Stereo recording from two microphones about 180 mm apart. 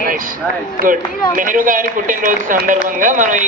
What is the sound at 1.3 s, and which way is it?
A man's voice, 45° right (ahead or behind).